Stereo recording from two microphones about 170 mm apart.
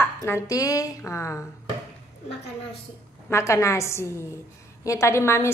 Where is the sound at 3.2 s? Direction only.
15° left (ahead or behind).